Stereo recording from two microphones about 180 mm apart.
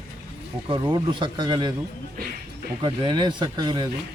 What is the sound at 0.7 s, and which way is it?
Speech, 25° right (ahead or behind).